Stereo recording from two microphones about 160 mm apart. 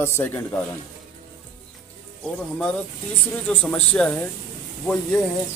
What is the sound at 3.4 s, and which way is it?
Speech, 10° left (ahead or behind).